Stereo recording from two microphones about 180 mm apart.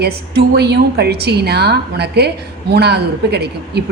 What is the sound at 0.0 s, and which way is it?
A woman's voice, 65° right (ahead or behind).